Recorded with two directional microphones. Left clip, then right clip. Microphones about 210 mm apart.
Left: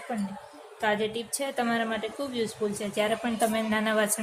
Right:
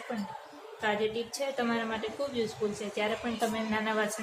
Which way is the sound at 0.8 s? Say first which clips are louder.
Left 3 dB; 40° left (ahead or behind).